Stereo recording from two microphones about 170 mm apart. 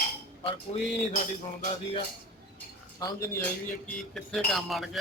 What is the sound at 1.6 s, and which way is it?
Music, 35° left (ahead or behind).